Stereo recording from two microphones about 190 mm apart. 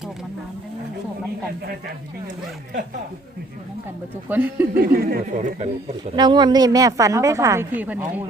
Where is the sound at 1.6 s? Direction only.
55° right (ahead or behind).